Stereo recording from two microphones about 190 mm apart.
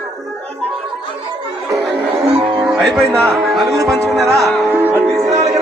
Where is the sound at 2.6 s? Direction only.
Centre (ahead or behind).